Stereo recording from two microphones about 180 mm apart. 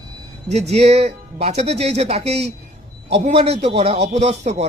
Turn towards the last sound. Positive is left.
turn(degrees=-35)  # may be behind; listen again after turning